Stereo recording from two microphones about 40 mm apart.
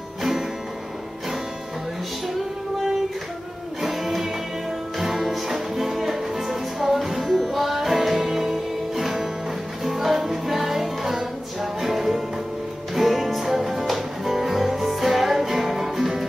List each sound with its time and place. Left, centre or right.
3.8 s music: centre